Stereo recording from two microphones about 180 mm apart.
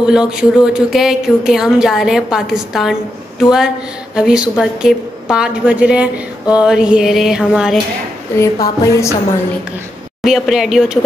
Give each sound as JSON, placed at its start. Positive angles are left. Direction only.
{"t": 0.0, "sound": "a woman's voice", "side_deg": -5}
{"t": 8.4, "sound": "speech", "side_deg": 20}
{"t": 10.2, "sound": "a woman's voice", "side_deg": 0}